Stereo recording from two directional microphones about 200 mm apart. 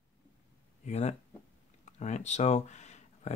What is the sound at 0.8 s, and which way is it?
Speech, 35° left (ahead or behind).